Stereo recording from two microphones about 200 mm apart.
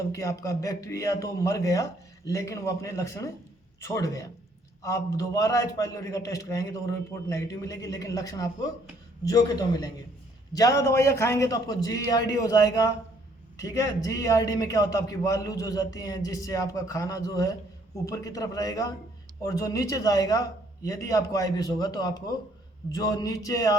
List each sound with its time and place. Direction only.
0.1 s a man's voice: 15° left (ahead or behind)